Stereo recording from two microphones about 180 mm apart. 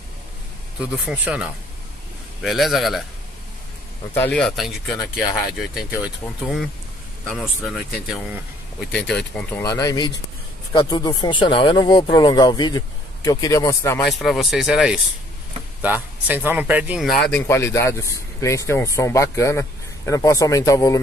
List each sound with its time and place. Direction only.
1.0 s speech: 5° right (ahead or behind)
4.1 s speech: 10° left (ahead or behind)
9.6 s speech: 20° left (ahead or behind)
14.0 s speech: centre (ahead or behind)
17.3 s speech: 15° left (ahead or behind)